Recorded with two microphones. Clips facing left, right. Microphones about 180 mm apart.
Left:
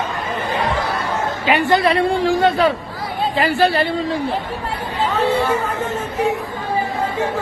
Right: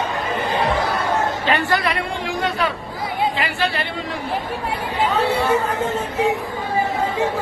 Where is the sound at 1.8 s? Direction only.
30° left (ahead or behind).